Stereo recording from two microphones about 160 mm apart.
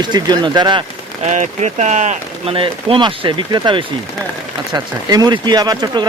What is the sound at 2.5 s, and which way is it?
Speech, 35° right (ahead or behind).